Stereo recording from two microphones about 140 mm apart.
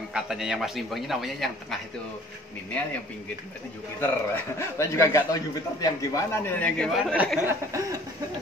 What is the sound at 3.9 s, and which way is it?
A man's voice, 15° left (ahead or behind).